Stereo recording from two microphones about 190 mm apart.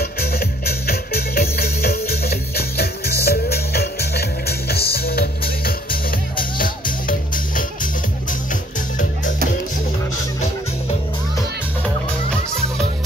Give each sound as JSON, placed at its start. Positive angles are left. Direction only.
{"t": 0.0, "sound": "music", "side_deg": 55}